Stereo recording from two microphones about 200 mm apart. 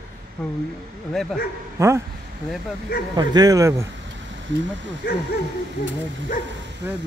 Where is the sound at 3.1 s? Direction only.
20° right (ahead or behind).